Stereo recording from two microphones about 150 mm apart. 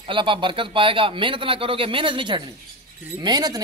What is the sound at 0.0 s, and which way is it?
A man's voice, 35° right (ahead or behind).